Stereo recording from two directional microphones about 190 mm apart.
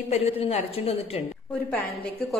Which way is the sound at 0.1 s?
35° left (ahead or behind).